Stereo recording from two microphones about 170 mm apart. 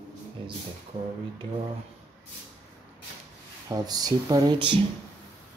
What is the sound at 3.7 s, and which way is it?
Speech, 25° right (ahead or behind).